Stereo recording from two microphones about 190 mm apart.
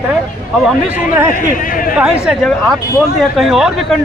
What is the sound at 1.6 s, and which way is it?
Speech, 45° left (ahead or behind).